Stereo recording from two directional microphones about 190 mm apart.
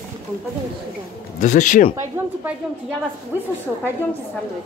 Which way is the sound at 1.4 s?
40° left (ahead or behind).